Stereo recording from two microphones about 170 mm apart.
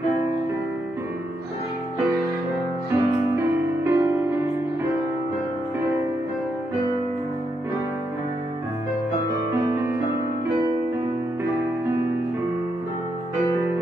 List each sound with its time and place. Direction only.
2.9 s music: 15° right (ahead or behind)
9.5 s music: 15° right (ahead or behind)